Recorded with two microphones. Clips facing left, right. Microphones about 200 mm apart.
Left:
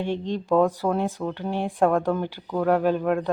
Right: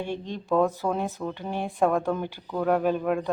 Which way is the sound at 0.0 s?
10° right (ahead or behind).